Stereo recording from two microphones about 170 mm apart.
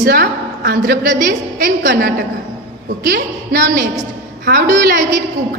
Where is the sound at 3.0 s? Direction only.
75° right (ahead or behind).